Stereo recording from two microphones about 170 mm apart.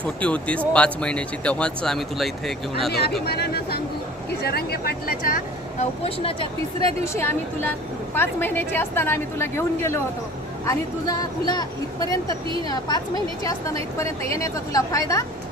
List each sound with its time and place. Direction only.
0.0 s a woman's voice: 10° left (ahead or behind)
2.9 s speech: 65° left (ahead or behind)
6.8 s a woman's voice: 15° left (ahead or behind)